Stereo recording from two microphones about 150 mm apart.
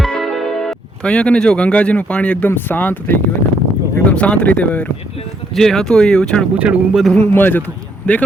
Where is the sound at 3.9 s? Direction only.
10° left (ahead or behind).